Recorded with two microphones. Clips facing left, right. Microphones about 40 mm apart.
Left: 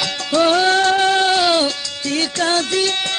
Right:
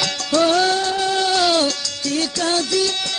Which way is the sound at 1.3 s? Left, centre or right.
Left.